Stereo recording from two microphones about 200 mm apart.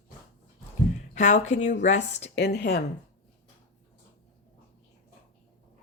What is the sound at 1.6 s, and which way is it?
Speech, 35° left (ahead or behind).